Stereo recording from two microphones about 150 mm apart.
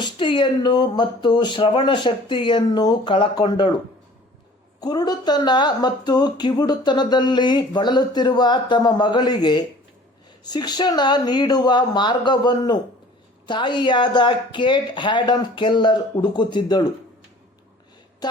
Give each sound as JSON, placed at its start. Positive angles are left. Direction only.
{"t": 0.0, "sound": "speech", "side_deg": 30}
{"t": 4.8, "sound": "speech", "side_deg": 25}